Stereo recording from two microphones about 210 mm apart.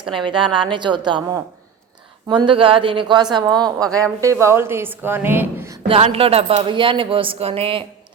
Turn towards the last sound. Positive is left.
turn(degrees=-25)  # may be behind; listen again after turning